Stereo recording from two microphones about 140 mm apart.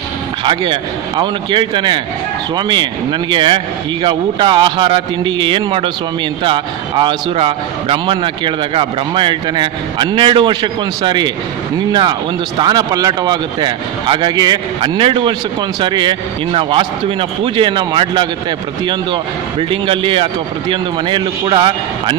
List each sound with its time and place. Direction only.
0.4 s a man's voice: 35° right (ahead or behind)
19.7 s a man's voice: 40° right (ahead or behind)